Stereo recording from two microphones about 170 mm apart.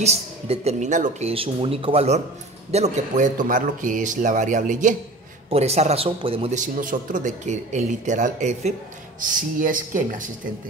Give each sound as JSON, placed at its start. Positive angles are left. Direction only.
{"t": 0.0, "sound": "a man's voice", "side_deg": -40}
{"t": 5.5, "sound": "speech", "side_deg": -40}
{"t": 6.6, "sound": "a man's voice", "side_deg": -50}